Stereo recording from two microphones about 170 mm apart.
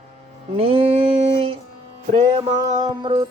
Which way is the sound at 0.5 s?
35° right (ahead or behind).